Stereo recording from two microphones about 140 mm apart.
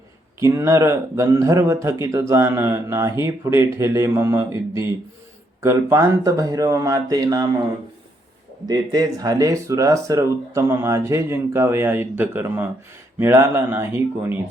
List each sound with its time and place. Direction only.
0.4 s speech: 20° right (ahead or behind)
5.6 s speech: 20° right (ahead or behind)
8.6 s speech: 30° right (ahead or behind)